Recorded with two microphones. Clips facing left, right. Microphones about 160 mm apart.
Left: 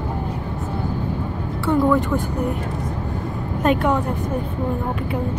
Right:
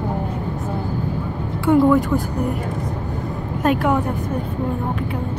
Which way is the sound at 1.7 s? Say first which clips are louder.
Right 4 dB; 5° right (ahead or behind).